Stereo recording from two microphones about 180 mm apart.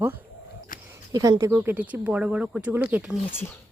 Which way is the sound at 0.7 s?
50° left (ahead or behind).